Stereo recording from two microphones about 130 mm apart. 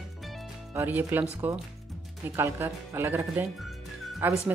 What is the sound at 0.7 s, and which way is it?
Speech, 20° right (ahead or behind).